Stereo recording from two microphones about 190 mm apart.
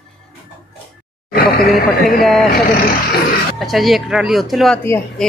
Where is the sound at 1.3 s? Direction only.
55° left (ahead or behind).